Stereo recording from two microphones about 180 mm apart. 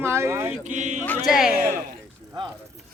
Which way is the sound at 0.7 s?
40° right (ahead or behind).